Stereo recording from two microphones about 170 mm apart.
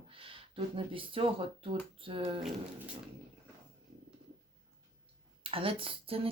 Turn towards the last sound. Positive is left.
turn(degrees=-35)  # may be behind; listen again after turning